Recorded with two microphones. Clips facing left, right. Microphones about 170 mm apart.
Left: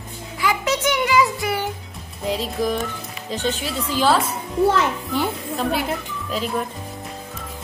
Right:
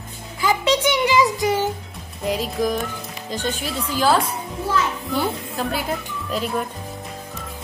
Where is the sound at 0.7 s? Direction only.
15° right (ahead or behind).